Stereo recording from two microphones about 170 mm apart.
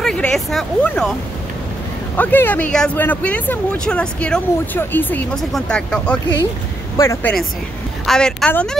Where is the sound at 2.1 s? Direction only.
10° left (ahead or behind).